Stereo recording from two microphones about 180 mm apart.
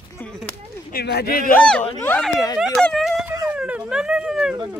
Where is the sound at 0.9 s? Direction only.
65° left (ahead or behind).